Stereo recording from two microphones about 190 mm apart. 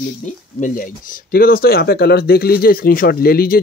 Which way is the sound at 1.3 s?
50° left (ahead or behind).